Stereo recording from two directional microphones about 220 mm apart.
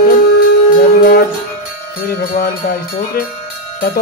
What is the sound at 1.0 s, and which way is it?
Music, 45° left (ahead or behind).